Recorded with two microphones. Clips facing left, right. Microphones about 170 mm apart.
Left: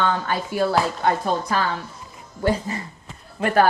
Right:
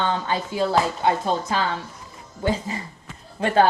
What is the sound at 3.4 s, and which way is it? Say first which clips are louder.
Speech: even; 25° right (ahead or behind).